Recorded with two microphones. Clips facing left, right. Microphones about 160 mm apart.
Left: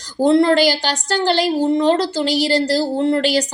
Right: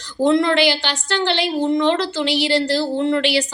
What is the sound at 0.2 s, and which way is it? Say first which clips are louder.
A woman's voice: left 3 dB; 35° left (ahead or behind).